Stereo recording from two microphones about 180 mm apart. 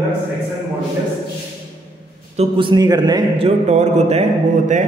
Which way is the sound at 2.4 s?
25° right (ahead or behind).